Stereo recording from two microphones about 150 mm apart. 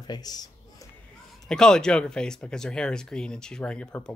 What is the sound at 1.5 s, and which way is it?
Speech, 5° left (ahead or behind).